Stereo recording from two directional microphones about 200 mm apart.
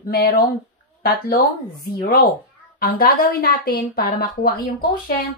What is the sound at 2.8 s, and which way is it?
A woman's voice, 50° left (ahead or behind).